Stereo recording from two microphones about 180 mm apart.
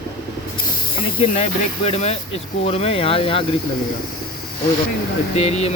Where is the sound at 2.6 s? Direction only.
35° left (ahead or behind).